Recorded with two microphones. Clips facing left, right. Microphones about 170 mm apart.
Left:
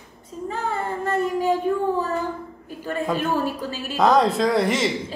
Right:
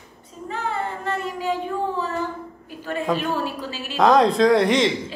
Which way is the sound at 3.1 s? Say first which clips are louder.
Left 2 dB; 45° left (ahead or behind).